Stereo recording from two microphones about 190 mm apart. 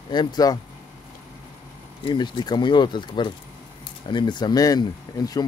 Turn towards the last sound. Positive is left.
turn(degrees=20)  # may be behind; listen again after turning